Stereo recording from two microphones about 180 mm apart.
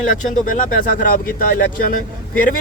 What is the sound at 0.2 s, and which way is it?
Speech, 50° left (ahead or behind).